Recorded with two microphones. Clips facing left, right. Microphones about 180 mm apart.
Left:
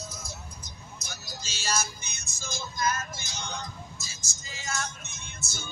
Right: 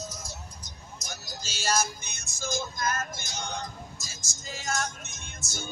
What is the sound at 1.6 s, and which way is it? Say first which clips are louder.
Music: right 4 dB; 50° right (ahead or behind).